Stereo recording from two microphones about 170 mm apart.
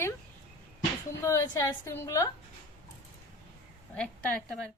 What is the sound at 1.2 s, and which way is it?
A woman's voice, 20° left (ahead or behind).